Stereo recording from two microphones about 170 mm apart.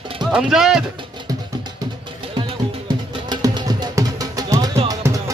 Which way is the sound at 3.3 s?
25° right (ahead or behind).